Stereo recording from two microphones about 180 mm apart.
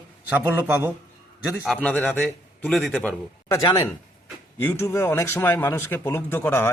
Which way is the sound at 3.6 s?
20° left (ahead or behind).